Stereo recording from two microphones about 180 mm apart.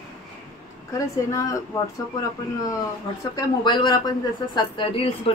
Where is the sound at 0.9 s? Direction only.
15° left (ahead or behind).